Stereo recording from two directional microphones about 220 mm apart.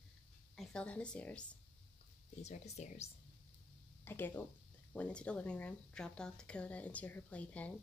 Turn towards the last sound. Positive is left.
turn(degrees=5)  # may be behind; listen again after turning